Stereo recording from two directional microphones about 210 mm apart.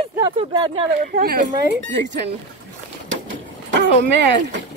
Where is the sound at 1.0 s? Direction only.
45° right (ahead or behind).